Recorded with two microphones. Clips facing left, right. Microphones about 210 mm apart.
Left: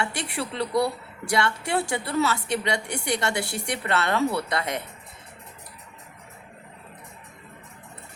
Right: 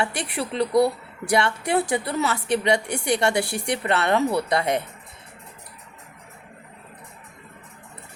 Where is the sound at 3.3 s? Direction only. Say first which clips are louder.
Right 5 dB; 25° left (ahead or behind).